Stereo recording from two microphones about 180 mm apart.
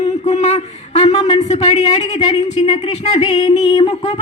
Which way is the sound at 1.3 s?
40° left (ahead or behind).